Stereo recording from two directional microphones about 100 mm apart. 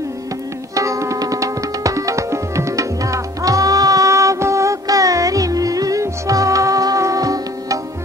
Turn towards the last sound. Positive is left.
turn(degrees=-35)  # may be behind; listen again after turning